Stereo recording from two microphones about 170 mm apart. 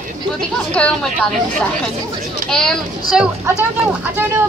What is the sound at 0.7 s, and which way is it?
Speech, 5° left (ahead or behind).